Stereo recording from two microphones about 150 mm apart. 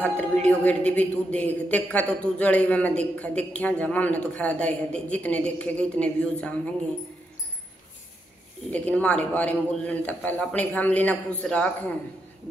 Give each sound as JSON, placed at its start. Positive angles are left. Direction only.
{"t": 0.0, "sound": "a woman's voice", "side_deg": 10}
{"t": 8.6, "sound": "a woman's voice", "side_deg": 10}